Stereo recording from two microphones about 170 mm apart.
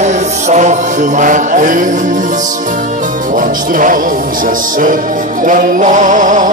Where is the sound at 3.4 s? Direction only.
50° right (ahead or behind).